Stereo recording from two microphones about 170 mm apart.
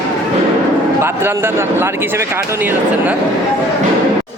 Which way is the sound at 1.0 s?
15° right (ahead or behind).